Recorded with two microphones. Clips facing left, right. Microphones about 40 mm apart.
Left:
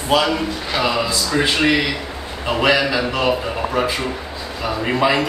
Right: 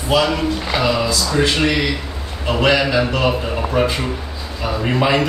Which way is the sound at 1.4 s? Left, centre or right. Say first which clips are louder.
Left 1 dB; centre.